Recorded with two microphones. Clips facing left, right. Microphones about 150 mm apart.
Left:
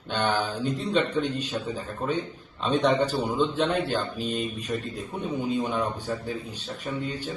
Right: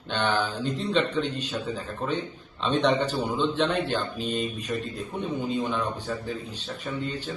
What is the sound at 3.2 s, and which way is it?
A man's voice, 5° left (ahead or behind).